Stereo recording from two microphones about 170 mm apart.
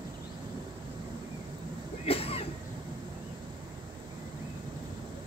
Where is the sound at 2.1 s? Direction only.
35° left (ahead or behind).